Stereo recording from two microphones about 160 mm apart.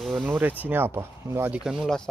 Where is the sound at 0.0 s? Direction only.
Centre (ahead or behind).